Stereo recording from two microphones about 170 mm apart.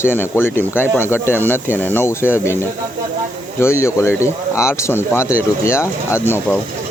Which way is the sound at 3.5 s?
15° left (ahead or behind).